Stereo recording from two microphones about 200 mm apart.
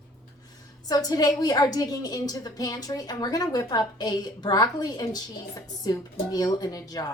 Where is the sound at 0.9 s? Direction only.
20° left (ahead or behind).